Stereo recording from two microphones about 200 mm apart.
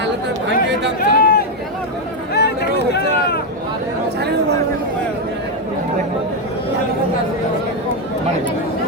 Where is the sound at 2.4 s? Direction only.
55° left (ahead or behind).